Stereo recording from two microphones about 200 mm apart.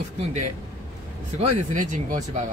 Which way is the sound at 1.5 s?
35° right (ahead or behind).